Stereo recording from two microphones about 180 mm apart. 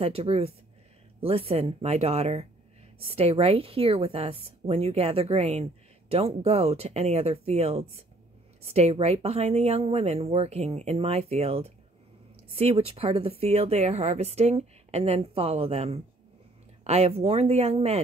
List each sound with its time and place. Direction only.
0.0 s a woman's voice: 35° right (ahead or behind)